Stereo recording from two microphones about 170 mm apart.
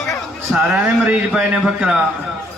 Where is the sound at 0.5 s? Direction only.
5° right (ahead or behind).